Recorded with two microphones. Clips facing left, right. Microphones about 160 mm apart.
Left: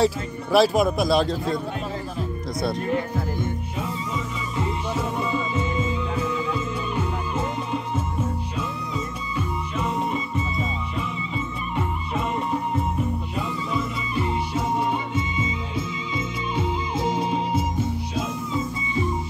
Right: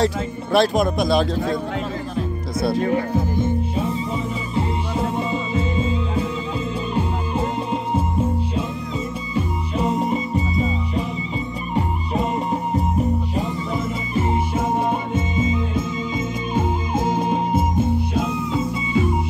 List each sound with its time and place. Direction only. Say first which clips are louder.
0.0 s speech: right 1 dB; 5° left (ahead or behind)
4.6 s music: right 3 dB; 30° right (ahead or behind)
11.7 s music: right 5 dB; 35° right (ahead or behind); by 19.1 s 75° right (ahead or behind)